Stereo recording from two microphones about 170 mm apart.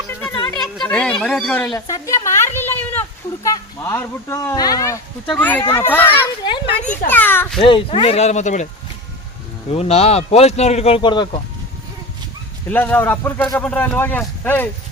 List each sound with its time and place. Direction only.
0.8 s a sound: 5° left (ahead or behind)
1.2 s speech: 5° left (ahead or behind)
1.7 s speech: 20° left (ahead or behind)
5.2 s speech: 5° left (ahead or behind)
6.4 s a sound: 25° left (ahead or behind)
7.1 s speech: 10° left (ahead or behind)
7.6 s speech: 30° left (ahead or behind)
9.6 s speech: 35° left (ahead or behind)
12.7 s speech: 10° left (ahead or behind)